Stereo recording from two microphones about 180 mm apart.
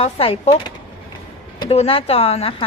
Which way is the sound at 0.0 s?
35° left (ahead or behind).